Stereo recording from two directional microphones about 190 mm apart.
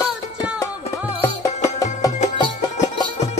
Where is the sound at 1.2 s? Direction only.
15° left (ahead or behind).